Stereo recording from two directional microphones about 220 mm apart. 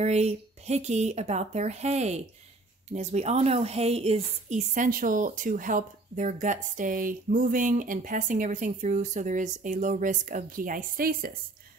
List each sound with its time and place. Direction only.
0.0 s a woman's voice: 30° right (ahead or behind)